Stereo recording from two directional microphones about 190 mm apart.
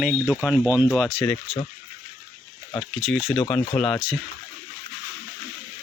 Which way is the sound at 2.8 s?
Centre (ahead or behind).